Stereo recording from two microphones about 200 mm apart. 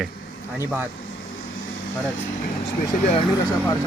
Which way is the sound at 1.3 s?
80° left.